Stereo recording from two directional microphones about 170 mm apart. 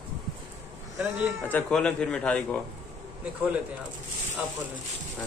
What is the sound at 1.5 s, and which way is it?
A man's voice, 5° left (ahead or behind).